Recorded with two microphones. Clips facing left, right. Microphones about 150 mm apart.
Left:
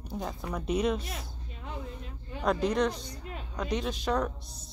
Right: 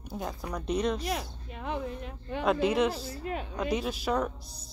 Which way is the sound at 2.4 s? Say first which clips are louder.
Right 1 dB; 5° right (ahead or behind).